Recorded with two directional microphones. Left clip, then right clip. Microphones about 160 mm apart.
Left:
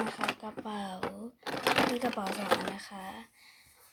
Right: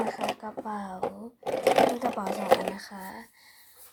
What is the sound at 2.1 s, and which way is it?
Speech, 10° left (ahead or behind).